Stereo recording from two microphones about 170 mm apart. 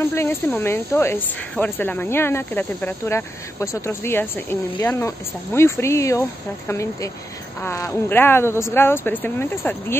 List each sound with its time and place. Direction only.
0.0 s speech: 15° left (ahead or behind)